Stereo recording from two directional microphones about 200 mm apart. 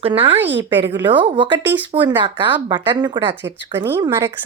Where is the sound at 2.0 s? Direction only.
20° right (ahead or behind).